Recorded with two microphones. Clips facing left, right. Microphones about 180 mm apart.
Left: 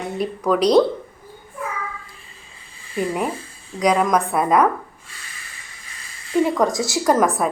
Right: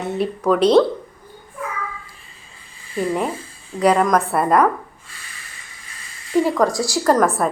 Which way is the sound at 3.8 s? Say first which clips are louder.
Right 2 dB; centre (ahead or behind).